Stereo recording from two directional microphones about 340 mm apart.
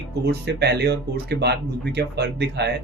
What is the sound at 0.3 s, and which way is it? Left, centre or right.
Speech, right.